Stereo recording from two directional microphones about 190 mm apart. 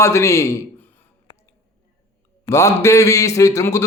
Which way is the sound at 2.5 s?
15° left (ahead or behind).